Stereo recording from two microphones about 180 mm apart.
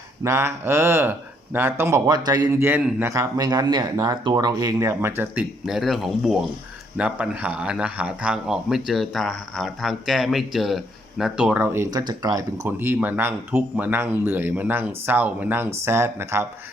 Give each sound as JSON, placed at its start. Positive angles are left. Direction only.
{"t": 0.2, "sound": "speech", "side_deg": -15}